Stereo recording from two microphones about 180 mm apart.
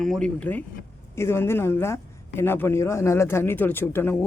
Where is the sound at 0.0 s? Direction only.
5° left (ahead or behind).